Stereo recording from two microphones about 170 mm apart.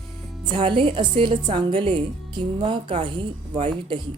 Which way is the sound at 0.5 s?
30° right (ahead or behind).